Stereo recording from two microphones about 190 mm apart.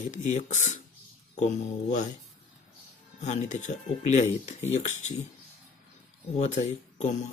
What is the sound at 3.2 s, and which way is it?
Speech, 40° left (ahead or behind).